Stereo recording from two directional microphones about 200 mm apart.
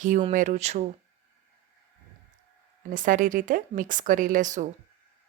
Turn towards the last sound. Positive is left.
turn(degrees=-40)  # may be behind; listen again after turning